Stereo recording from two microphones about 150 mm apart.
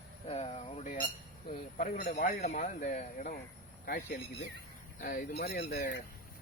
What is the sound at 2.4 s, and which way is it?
Speech, 55° left (ahead or behind).